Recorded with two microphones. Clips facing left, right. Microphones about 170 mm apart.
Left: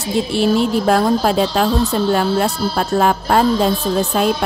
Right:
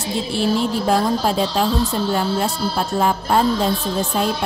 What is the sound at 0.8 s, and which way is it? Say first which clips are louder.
Speech: left 2 dB; 75° left (ahead or behind).